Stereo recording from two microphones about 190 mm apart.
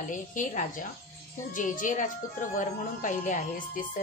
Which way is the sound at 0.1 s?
45° left (ahead or behind).